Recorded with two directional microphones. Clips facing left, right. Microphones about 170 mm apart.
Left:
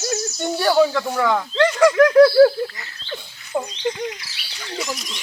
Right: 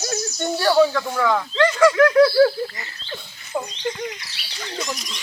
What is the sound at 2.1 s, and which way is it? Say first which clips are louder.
Speech: left 3 dB; 30° left (ahead or behind).